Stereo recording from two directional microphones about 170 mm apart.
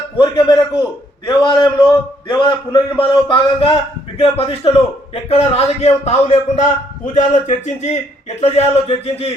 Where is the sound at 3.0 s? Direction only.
30° left (ahead or behind).